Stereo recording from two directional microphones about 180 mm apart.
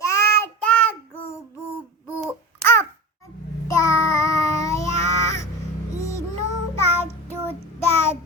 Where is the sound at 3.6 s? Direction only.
15° left (ahead or behind).